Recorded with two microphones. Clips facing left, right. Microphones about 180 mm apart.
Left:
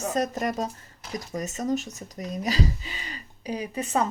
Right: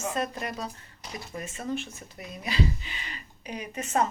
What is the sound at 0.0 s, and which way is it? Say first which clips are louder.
A woman's voice: left 5 dB; 40° left (ahead or behind).